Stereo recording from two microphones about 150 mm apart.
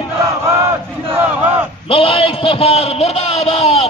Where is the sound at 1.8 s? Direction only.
40° left (ahead or behind).